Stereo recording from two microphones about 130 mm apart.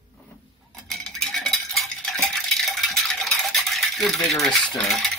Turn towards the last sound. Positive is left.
turn(degrees=0)  # may be behind; listen again after turning